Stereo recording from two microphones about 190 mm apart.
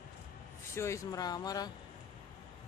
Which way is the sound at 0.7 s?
15° left (ahead or behind).